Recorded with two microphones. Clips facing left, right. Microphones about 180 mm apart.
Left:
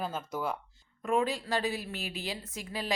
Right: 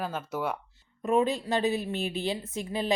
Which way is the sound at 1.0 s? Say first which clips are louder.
Right 4 dB; 20° right (ahead or behind).